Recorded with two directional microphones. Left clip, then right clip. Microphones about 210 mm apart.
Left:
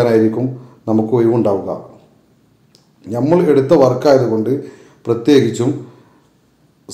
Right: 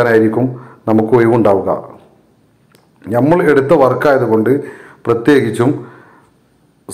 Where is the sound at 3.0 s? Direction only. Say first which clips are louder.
Right 3 dB; 10° right (ahead or behind).